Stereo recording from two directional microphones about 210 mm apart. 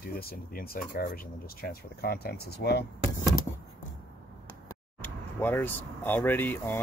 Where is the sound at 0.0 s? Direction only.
45° left (ahead or behind).